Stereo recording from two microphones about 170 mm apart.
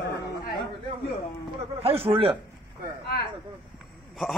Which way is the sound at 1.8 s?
35° right (ahead or behind).